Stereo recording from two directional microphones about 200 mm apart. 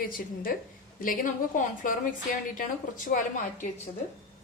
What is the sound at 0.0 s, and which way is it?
A woman's voice, 45° left (ahead or behind).